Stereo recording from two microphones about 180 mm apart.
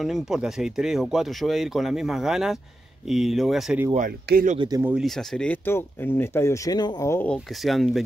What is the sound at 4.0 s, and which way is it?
Speech, 55° right (ahead or behind).